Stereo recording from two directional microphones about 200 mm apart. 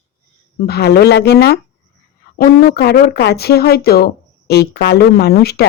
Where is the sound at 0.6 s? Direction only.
55° left (ahead or behind).